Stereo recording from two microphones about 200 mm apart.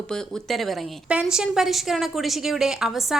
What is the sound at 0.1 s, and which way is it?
A woman's voice, centre (ahead or behind).